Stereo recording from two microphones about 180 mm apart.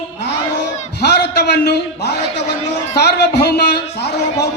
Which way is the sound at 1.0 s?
65° left (ahead or behind).